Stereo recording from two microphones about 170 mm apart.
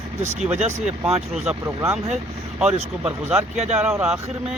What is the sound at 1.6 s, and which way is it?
Speech, 15° right (ahead or behind).